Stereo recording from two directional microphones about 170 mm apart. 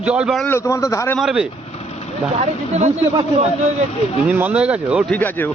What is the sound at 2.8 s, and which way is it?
Speech, 40° right (ahead or behind).